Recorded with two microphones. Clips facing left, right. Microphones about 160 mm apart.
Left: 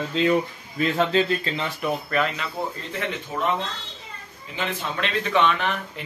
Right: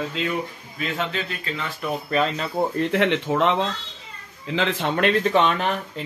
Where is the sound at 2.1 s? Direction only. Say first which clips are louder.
Right 2 dB; 30° right (ahead or behind).